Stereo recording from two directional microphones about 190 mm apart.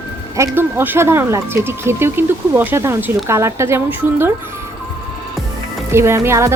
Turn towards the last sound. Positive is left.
turn(degrees=-15)  # may be behind; listen again after turning